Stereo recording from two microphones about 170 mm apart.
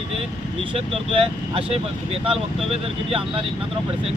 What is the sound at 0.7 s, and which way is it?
Speech, 35° right (ahead or behind).